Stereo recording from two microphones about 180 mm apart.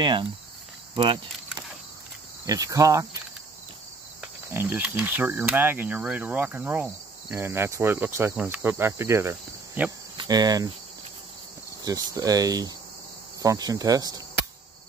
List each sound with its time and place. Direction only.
0.0 s speech: 25° right (ahead or behind)
2.4 s speech: 20° right (ahead or behind)
4.2 s cricket: 10° right (ahead or behind)
11.8 s speech: 20° right (ahead or behind)